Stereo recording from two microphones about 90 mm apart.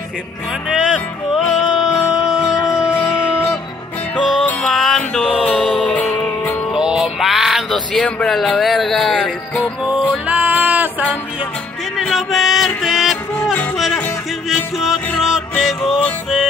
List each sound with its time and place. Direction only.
0.7 s speech: 10° right (ahead or behind)
1.3 s music: 5° right (ahead or behind)
6.7 s music: 5° right (ahead or behind)
10.2 s a sound: 20° right (ahead or behind)
12.1 s music: centre (ahead or behind)
14.5 s music: 5° right (ahead or behind)
15.5 s music: 10° left (ahead or behind)